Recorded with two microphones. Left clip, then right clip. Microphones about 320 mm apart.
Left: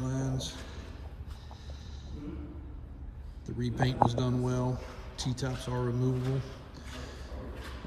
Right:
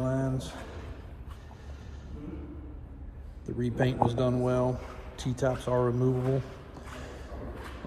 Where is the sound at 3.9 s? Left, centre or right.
Right.